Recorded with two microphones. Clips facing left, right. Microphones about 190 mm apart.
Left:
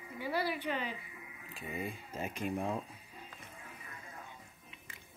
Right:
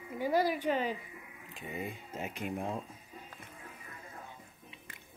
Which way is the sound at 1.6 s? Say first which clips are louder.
Even; 20° right (ahead or behind).